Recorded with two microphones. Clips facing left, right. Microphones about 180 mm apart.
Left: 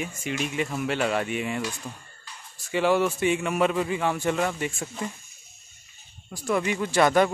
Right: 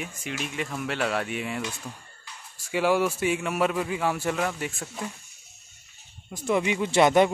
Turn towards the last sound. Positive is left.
turn(degrees=-20)  # may be behind; listen again after turning